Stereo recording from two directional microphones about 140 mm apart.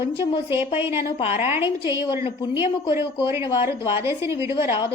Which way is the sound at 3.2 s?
20° right (ahead or behind).